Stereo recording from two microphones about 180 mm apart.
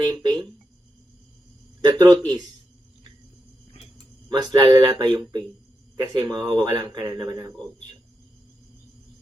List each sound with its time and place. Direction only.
0.0 s speech: 20° right (ahead or behind)
1.8 s speech: 20° right (ahead or behind)
4.3 s speech: 20° right (ahead or behind)